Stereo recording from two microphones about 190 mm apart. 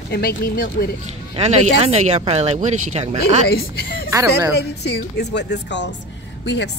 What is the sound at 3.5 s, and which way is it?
A woman's voice, 55° left (ahead or behind).